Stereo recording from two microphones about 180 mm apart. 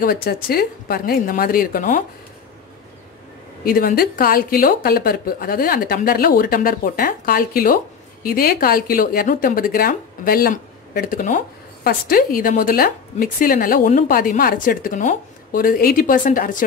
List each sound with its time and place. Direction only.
0.0 s a woman's voice: 55° left (ahead or behind)
3.6 s speech: 50° left (ahead or behind)